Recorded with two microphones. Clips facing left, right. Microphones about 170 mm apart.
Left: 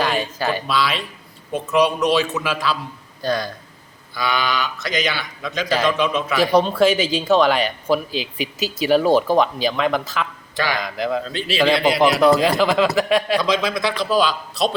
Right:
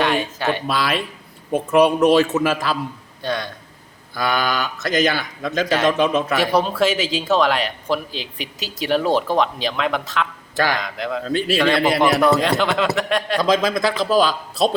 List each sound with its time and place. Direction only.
0.0 s speech: centre (ahead or behind)
0.7 s a man's voice: 50° right (ahead or behind)
3.2 s speech: centre (ahead or behind)
4.1 s a man's voice: 50° right (ahead or behind)
5.6 s a man's voice: centre (ahead or behind)
6.0 s a man's voice: 50° right (ahead or behind)
6.3 s a man's voice: centre (ahead or behind)
11.3 s a man's voice: 50° right (ahead or behind)
11.5 s a man's voice: centre (ahead or behind)
13.4 s a man's voice: 45° right (ahead or behind)